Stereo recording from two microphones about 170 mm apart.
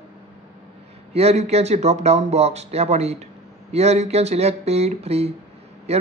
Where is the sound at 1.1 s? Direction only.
40° right (ahead or behind).